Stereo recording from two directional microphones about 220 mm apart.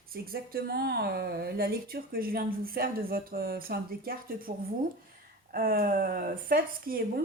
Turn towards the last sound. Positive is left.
turn(degrees=-45)  # may be behind; listen again after turning